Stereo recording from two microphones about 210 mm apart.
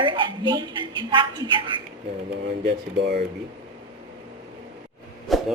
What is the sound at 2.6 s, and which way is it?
Speech, 50° right (ahead or behind).